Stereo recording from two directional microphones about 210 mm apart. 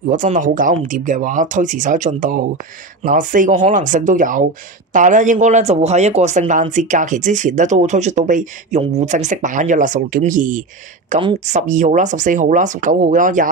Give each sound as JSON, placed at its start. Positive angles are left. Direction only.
{"t": 0.0, "sound": "speech", "side_deg": -40}
{"t": 11.1, "sound": "speech", "side_deg": -30}